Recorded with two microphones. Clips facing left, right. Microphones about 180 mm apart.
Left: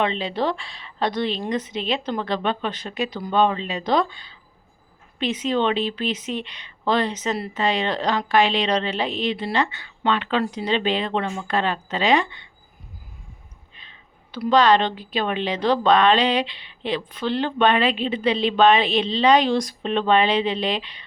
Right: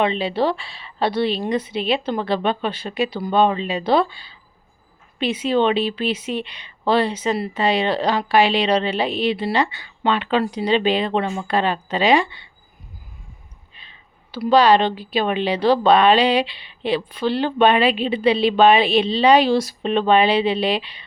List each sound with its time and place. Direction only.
0.0 s a woman's voice: 10° right (ahead or behind)
13.7 s a woman's voice: 10° right (ahead or behind)